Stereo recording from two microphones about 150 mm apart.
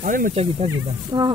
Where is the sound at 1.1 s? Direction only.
30° right (ahead or behind).